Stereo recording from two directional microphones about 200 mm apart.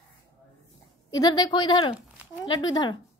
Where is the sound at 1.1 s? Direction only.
20° left (ahead or behind).